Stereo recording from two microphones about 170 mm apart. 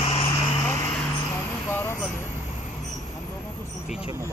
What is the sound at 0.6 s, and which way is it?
Vehicle, 10° left (ahead or behind).